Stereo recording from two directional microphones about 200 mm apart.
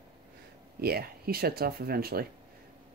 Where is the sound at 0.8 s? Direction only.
50° right (ahead or behind).